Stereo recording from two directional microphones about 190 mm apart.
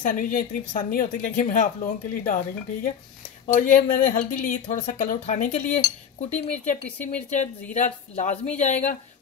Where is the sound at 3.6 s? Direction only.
45° left (ahead or behind).